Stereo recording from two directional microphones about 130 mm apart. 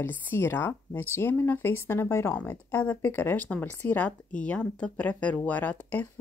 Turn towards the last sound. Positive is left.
turn(degrees=10)  # may be behind; listen again after turning